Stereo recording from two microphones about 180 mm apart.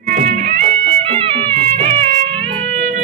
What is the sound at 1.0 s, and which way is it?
Music, 30° right (ahead or behind).